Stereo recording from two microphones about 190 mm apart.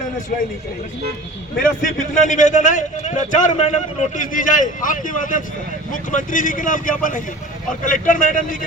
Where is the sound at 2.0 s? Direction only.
40° left (ahead or behind).